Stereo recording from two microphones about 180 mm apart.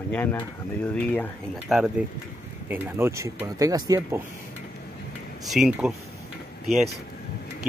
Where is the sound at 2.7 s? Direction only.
10° right (ahead or behind).